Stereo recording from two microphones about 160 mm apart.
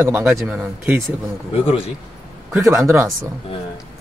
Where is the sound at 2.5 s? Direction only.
15° right (ahead or behind).